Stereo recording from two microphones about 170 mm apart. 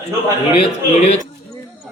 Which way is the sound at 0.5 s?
40° left (ahead or behind).